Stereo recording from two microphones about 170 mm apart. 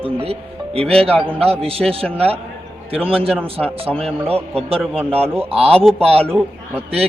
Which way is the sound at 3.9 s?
5° left (ahead or behind).